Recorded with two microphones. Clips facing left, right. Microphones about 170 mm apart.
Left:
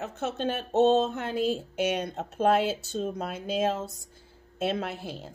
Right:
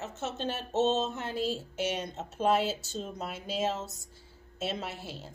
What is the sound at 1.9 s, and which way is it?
Speech, 60° left (ahead or behind).